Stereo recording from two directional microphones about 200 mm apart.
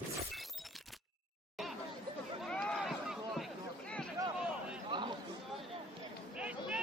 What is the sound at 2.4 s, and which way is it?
Run, 5° left (ahead or behind).